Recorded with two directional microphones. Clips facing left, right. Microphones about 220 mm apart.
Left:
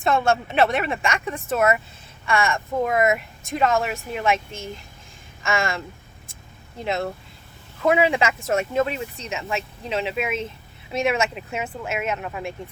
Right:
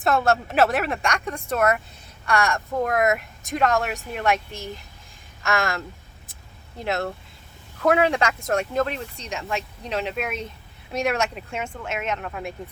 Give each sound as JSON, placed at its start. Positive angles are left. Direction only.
{"t": 0.0, "sound": "speech", "side_deg": 0}